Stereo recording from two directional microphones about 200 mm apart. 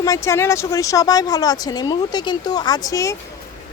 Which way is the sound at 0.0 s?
15° left (ahead or behind).